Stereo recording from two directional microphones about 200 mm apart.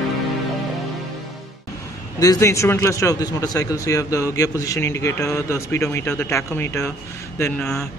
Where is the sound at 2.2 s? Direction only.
15° left (ahead or behind).